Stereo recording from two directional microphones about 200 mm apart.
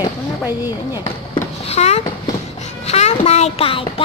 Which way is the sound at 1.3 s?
30° left (ahead or behind).